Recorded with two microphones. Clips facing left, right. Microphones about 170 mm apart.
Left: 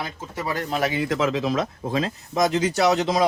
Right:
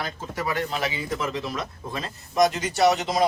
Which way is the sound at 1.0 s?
90° left.